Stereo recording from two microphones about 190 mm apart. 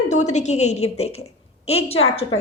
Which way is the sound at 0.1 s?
40° left (ahead or behind).